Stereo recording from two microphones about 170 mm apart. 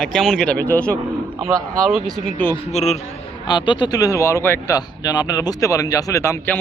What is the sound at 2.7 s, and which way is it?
Speech, 40° left (ahead or behind).